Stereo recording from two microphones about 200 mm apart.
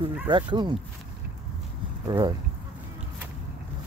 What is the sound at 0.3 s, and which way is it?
Speech, 25° right (ahead or behind).